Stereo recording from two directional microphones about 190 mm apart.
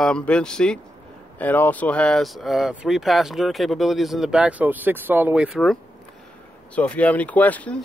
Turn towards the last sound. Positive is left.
turn(degrees=10)  # may be behind; listen again after turning